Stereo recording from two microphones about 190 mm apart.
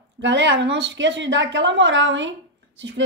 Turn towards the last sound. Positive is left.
turn(degrees=-75)  # may be behind; listen again after turning